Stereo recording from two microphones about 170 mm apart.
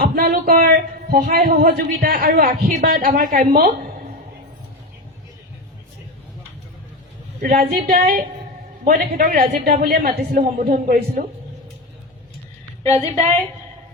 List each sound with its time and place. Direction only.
0.0 s a woman's voice: 60° right (ahead or behind)
7.7 s a man's voice: 60° right (ahead or behind)
13.0 s a woman's voice: 40° right (ahead or behind)